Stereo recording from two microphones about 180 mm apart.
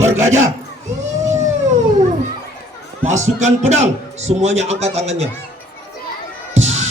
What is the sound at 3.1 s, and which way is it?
A man's voice, 40° right (ahead or behind).